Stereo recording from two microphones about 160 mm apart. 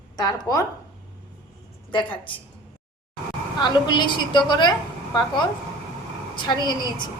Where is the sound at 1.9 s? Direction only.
30° left (ahead or behind).